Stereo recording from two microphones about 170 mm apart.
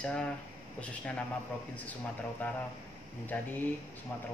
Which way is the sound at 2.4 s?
10° left (ahead or behind).